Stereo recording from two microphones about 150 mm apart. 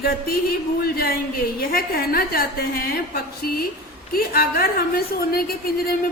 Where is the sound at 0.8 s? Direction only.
90° left.